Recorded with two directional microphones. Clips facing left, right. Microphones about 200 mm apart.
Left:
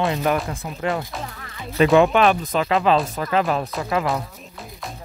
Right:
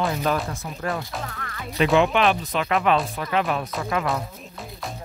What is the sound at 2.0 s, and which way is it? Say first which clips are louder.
Speech: left 3 dB; 45° left (ahead or behind).